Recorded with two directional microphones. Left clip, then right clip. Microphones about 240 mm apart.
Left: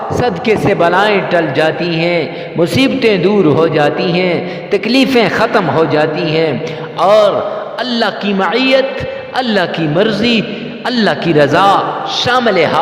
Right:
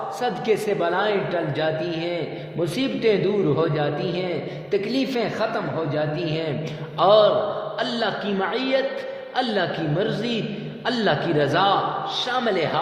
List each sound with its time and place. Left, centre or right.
0.2 s a man's voice: left